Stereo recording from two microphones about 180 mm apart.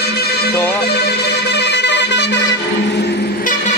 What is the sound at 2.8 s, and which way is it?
Train, 70° left (ahead or behind).